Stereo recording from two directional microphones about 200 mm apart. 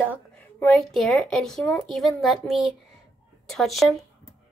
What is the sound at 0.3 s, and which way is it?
A woman's voice, 5° left (ahead or behind).